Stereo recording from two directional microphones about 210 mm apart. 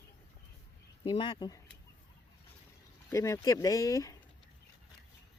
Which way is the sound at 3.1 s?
15° left (ahead or behind).